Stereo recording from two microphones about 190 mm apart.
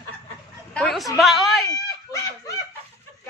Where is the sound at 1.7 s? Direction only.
20° left (ahead or behind).